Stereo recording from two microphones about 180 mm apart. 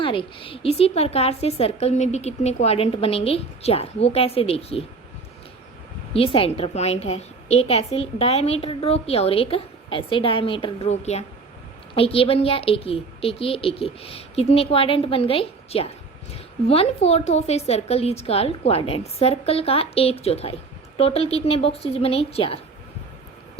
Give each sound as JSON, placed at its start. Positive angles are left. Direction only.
{"t": 0.0, "sound": "a woman's voice", "side_deg": 30}
{"t": 6.1, "sound": "a woman's voice", "side_deg": 30}